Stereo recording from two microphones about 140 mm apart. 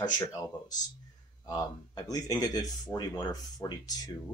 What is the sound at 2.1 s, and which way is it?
Speech, 30° left (ahead or behind).